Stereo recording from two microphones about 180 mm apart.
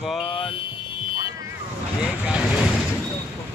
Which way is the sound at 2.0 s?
5° right (ahead or behind).